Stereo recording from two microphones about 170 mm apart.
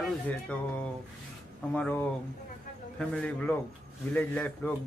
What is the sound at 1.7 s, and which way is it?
Speech, 10° left (ahead or behind).